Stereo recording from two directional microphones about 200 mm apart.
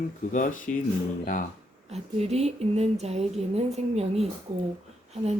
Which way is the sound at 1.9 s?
30° right (ahead or behind).